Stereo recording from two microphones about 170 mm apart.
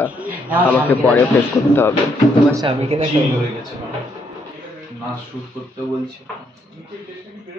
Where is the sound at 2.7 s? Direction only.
35° right (ahead or behind).